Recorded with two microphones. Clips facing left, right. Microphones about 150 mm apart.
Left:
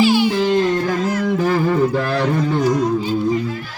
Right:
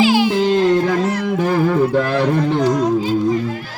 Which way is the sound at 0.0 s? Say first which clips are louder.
Right 1 dB; 90° right.